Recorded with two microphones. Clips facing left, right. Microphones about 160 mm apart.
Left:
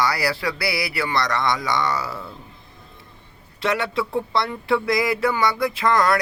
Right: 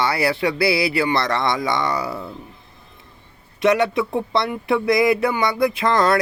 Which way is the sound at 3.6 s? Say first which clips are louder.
Right 6 dB; 20° right (ahead or behind).